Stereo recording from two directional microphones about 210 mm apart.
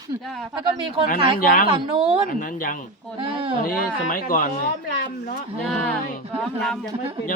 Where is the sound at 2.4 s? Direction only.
40° left (ahead or behind).